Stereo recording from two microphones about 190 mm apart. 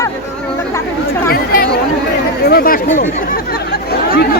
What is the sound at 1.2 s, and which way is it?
Chatter, 50° left (ahead or behind).